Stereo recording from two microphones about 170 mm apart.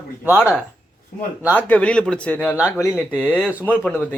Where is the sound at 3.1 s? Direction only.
10° left (ahead or behind).